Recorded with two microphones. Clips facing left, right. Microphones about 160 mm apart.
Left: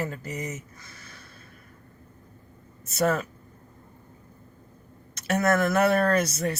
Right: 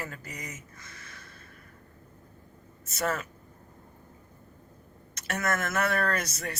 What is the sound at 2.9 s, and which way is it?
Speech, 30° left (ahead or behind).